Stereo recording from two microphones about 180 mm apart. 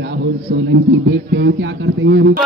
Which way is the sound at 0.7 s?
80° right.